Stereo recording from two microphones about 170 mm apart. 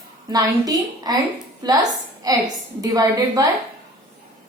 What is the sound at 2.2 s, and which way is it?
A woman's voice, 20° right (ahead or behind).